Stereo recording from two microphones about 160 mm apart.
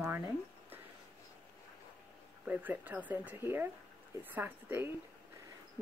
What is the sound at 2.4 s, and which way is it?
Speech, 10° right (ahead or behind).